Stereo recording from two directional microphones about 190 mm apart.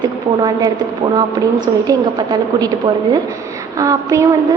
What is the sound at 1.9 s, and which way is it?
Speech, 20° right (ahead or behind).